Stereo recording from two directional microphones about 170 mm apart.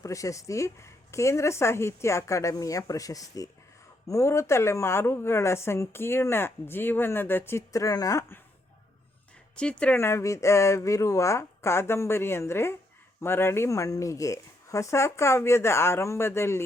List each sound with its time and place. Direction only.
0.0 s speech: 20° left (ahead or behind)
9.6 s speech: 5° left (ahead or behind)